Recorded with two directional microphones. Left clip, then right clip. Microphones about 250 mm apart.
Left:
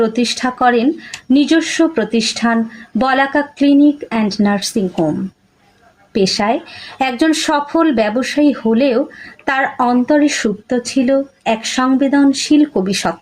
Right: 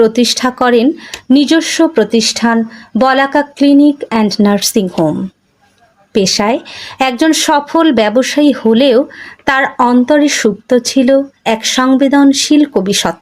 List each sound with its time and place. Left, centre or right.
0.0 s speech: right
6.1 s speech: right